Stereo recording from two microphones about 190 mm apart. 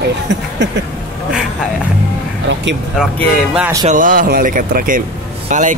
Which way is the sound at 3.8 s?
45° right (ahead or behind).